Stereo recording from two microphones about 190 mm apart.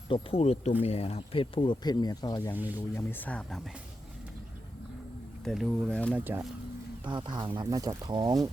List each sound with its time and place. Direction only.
0.1 s speech: 30° left (ahead or behind); by 3.6 s 5° left (ahead or behind)
5.5 s speech: centre (ahead or behind)
6.1 s speech: 10° right (ahead or behind)
7.0 s speech: 25° right (ahead or behind)